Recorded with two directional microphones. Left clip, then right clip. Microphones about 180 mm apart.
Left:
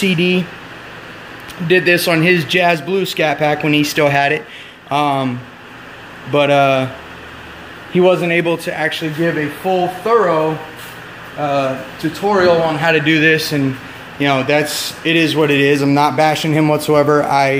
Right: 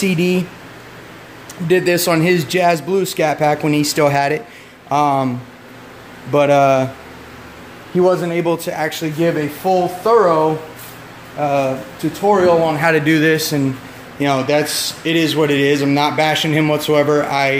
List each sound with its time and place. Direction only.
0.0 s a man's voice: 5° right (ahead or behind)
1.7 s a man's voice: 10° right (ahead or behind)
6.3 s a man's voice: 15° right (ahead or behind)
8.0 s a man's voice: centre (ahead or behind); by 10.2 s 15° right (ahead or behind)
11.3 s a man's voice: 20° right (ahead or behind)
12.3 s a man's voice: 35° right (ahead or behind); by 17.6 s 10° left (ahead or behind)